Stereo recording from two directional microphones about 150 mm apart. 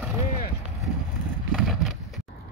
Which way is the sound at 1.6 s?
Centre (ahead or behind).